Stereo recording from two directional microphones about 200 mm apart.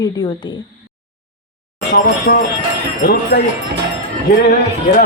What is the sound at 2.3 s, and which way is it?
Speech, 50° left (ahead or behind).